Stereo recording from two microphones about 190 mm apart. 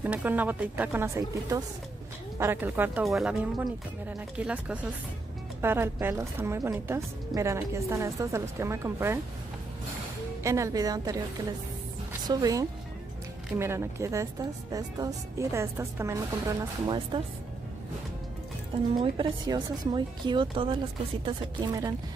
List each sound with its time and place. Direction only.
0.0 s speech: 10° right (ahead or behind)
10.4 s speech: 15° right (ahead or behind)
12.3 s speech: 20° right (ahead or behind)
18.9 s speech: 25° right (ahead or behind)